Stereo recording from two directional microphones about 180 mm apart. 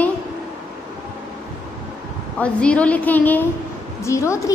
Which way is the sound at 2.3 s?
5° left (ahead or behind).